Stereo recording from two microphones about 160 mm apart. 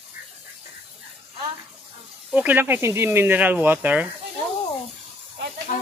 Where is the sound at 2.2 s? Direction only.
10° right (ahead or behind).